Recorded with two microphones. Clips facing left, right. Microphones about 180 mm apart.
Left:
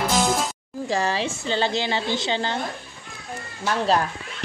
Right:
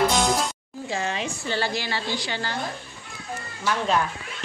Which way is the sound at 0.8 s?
40° left (ahead or behind).